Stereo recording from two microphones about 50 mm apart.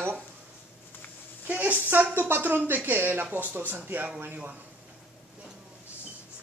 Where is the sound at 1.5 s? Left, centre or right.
Right.